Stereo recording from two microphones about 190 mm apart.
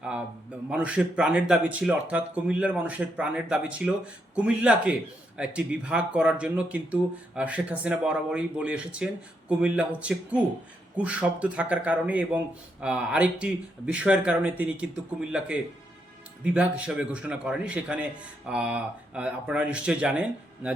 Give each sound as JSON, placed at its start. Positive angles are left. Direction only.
{"t": 0.7, "sound": "speech", "side_deg": -5}